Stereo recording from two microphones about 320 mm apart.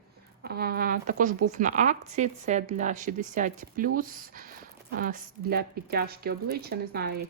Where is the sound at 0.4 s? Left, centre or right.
Right.